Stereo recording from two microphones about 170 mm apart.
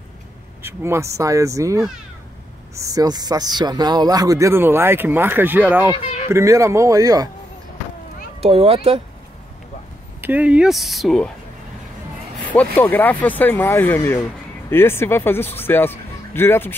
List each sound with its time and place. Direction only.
0.6 s speech: 15° right (ahead or behind)
5.9 s speech: 40° left (ahead or behind)
6.3 s speech: 15° right (ahead or behind)
8.4 s speech: 35° right (ahead or behind)
10.2 s speech: 10° right (ahead or behind)
12.7 s speech: 10° left (ahead or behind)